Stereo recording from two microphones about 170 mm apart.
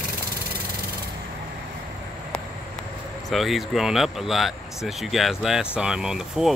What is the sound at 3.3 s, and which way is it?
Speech, centre (ahead or behind).